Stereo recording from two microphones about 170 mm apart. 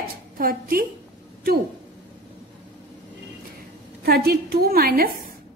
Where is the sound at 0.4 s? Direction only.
55° right (ahead or behind).